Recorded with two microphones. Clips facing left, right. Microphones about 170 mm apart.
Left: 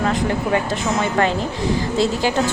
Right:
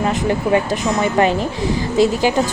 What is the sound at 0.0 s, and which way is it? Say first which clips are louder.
Speech: right 2 dB; 20° right (ahead or behind).